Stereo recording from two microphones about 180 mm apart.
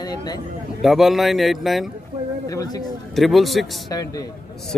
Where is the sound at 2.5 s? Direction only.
20° left (ahead or behind).